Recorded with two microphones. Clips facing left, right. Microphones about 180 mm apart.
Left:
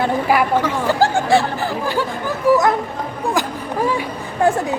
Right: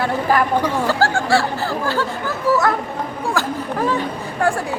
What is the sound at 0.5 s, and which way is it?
Speech, 15° right (ahead or behind).